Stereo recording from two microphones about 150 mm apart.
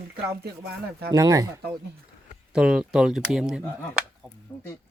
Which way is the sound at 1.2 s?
25° right (ahead or behind).